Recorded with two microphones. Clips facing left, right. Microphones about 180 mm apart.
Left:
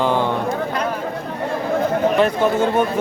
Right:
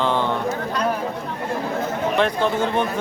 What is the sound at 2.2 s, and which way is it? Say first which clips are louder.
Speech: left 1 dB; 5° left (ahead or behind).